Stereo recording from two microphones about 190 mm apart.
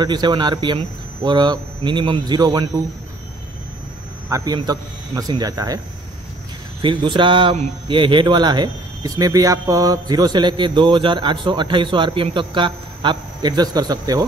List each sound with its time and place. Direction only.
0.0 s speech: 20° right (ahead or behind)
4.3 s speech: 20° right (ahead or behind)
6.8 s speech: 25° right (ahead or behind)